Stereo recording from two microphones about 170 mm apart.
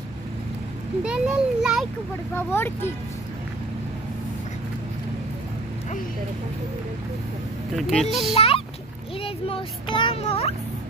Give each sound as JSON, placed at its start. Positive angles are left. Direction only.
{"t": 1.0, "sound": "a child's voice", "side_deg": -5}
{"t": 2.3, "sound": "speech", "side_deg": 15}
{"t": 7.7, "sound": "a child's voice", "side_deg": 0}
{"t": 8.4, "sound": "speech", "side_deg": 35}